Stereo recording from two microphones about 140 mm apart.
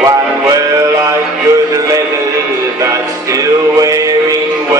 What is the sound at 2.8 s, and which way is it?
Music, 25° right (ahead or behind).